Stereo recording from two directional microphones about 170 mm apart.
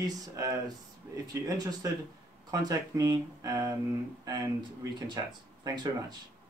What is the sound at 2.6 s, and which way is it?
Speech, 20° right (ahead or behind).